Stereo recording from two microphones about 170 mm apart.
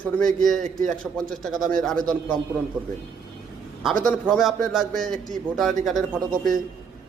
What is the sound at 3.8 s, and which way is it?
A man's voice, centre (ahead or behind).